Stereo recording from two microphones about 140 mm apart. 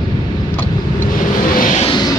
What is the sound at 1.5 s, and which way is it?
Vehicle, 75° left (ahead or behind).